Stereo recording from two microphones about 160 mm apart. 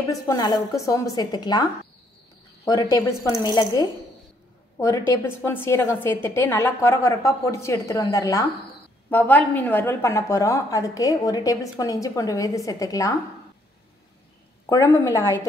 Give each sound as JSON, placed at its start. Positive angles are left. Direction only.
{"t": 0.1, "sound": "a woman's voice", "side_deg": 20}
{"t": 14.7, "sound": "a woman's voice", "side_deg": 20}